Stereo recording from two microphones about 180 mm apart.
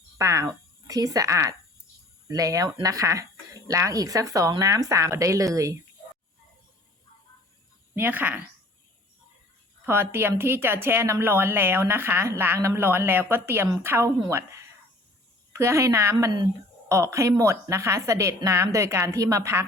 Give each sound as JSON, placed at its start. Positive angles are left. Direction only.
{"t": 0.2, "sound": "a woman's voice", "side_deg": -15}
{"t": 7.9, "sound": "a woman's voice", "side_deg": -10}
{"t": 9.8, "sound": "a woman's voice", "side_deg": -10}